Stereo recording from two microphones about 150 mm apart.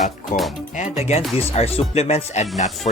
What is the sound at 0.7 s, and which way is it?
Speech, 45° left (ahead or behind).